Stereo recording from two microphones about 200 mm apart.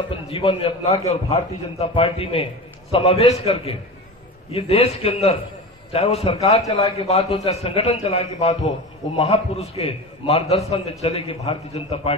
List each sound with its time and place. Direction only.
0.1 s a man's voice: 25° left (ahead or behind)